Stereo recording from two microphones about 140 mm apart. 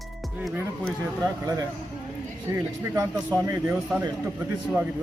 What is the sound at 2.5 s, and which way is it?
A man's voice, 20° right (ahead or behind).